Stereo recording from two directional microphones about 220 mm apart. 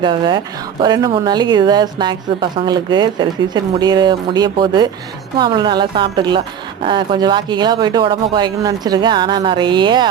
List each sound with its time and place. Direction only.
0.0 s speech: 20° right (ahead or behind)